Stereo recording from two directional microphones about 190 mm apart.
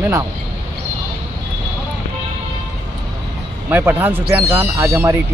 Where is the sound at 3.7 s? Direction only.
10° right (ahead or behind).